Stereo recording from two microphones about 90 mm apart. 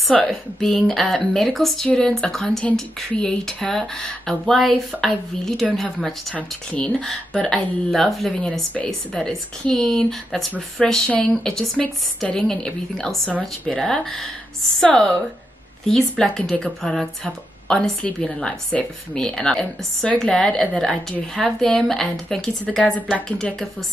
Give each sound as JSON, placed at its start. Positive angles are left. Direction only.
{"t": 0.3, "sound": "speech", "side_deg": 5}
{"t": 15.9, "sound": "speech", "side_deg": 5}